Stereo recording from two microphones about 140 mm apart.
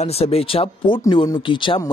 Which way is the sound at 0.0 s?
45° left (ahead or behind).